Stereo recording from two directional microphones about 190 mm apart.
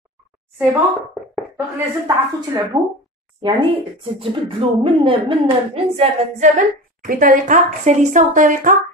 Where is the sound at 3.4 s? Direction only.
25° right (ahead or behind).